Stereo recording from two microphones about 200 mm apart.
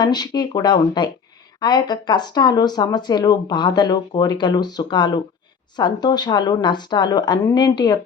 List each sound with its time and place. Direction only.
0.0 s speech: 20° left (ahead or behind)